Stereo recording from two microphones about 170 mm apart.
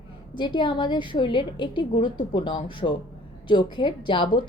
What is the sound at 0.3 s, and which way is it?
A woman's voice, 25° left (ahead or behind).